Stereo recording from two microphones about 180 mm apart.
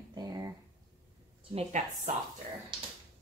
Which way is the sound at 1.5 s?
35° right (ahead or behind).